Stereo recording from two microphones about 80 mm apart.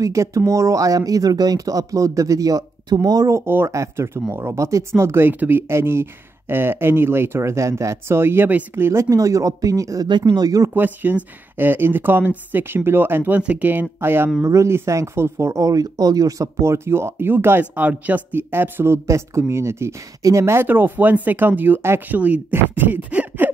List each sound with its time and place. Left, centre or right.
0.0 s speech: right
3.4 s speech: right
9.1 s speech: right
10.0 s speech: right
10.7 s speech: right
14.4 s speech: right
20.6 s speech: right